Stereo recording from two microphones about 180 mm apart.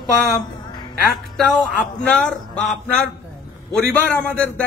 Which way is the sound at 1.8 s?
5° left (ahead or behind).